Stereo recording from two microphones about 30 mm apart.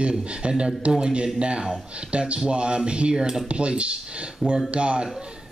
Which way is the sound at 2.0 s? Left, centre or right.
Right.